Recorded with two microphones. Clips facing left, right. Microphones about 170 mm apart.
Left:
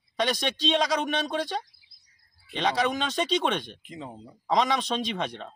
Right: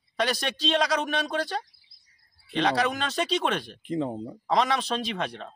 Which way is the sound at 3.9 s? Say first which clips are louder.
Right 11 dB; 50° right (ahead or behind).